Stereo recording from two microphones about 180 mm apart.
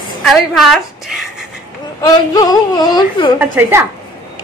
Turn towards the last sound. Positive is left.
turn(degrees=-10)  # may be behind; listen again after turning